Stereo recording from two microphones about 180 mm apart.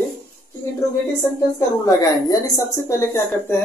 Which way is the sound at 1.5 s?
20° left (ahead or behind).